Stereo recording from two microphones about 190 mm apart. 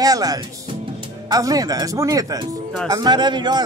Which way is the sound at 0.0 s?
20° right (ahead or behind).